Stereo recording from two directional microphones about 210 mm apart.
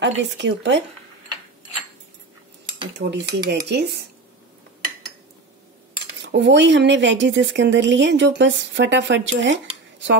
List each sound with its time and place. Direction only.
0.0 s speech: 60° right (ahead or behind)
3.0 s speech: 50° right (ahead or behind)
6.2 s speech: 55° right (ahead or behind)